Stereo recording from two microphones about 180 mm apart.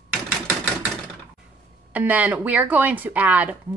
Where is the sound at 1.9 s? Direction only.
10° right (ahead or behind).